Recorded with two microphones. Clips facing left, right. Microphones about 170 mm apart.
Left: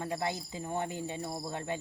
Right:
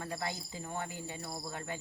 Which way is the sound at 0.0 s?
20° left (ahead or behind).